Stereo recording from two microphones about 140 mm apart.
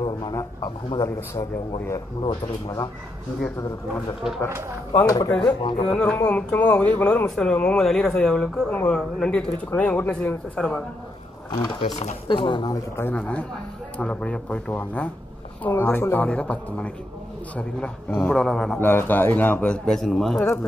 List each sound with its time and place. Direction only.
0.0 s a man's voice: 30° left (ahead or behind)
2.2 s a man's voice: 30° left (ahead or behind)
5.0 s a man's voice: 25° left (ahead or behind)
5.6 s speech: 35° left (ahead or behind)
5.9 s speech: 10° left (ahead or behind)
11.8 s speech: 50° left (ahead or behind)
12.7 s a man's voice: 15° left (ahead or behind)
18.8 s speech: 15° left (ahead or behind)
20.3 s speech: 20° left (ahead or behind)